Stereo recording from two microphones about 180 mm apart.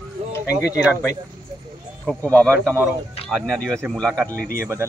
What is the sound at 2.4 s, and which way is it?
Speech, 15° right (ahead or behind).